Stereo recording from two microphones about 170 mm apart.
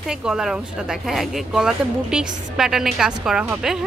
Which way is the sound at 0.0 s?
5° right (ahead or behind).